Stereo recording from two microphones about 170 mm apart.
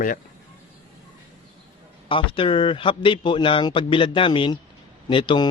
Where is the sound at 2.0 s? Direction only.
30° left (ahead or behind).